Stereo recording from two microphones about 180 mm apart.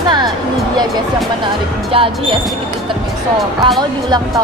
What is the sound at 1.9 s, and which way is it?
Speech, 30° right (ahead or behind).